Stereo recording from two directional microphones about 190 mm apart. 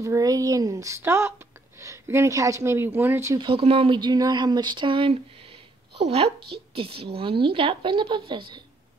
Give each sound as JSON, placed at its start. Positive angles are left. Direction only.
{"t": 0.0, "sound": "speech", "side_deg": -15}
{"t": 3.3, "sound": "speech", "side_deg": -30}